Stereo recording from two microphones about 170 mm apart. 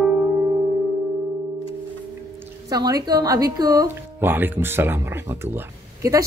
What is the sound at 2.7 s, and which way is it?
A woman's voice, 20° right (ahead or behind).